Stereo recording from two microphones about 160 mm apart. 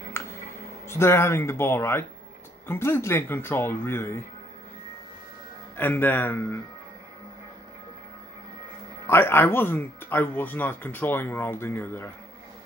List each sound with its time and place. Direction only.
0.2 s music: 15° left (ahead or behind)
0.8 s speech: 15° left (ahead or behind)
5.8 s speech: 10° left (ahead or behind)
9.0 s speech: 15° left (ahead or behind)